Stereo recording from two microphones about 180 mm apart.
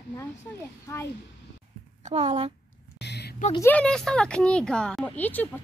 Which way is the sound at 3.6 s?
5° left (ahead or behind).